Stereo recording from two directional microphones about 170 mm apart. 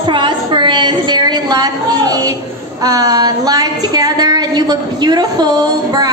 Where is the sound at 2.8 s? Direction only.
20° right (ahead or behind).